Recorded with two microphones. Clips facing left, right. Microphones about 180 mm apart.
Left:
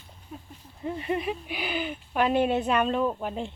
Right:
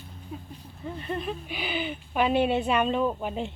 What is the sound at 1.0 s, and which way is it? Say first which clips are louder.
Speech: left 2 dB; 10° left (ahead or behind).